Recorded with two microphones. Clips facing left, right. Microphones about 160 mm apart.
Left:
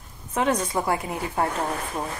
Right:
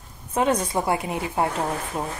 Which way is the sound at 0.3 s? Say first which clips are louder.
Right 2 dB; 20° right (ahead or behind).